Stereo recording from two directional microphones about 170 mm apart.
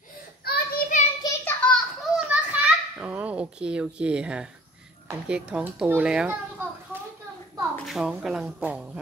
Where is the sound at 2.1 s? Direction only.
5° right (ahead or behind).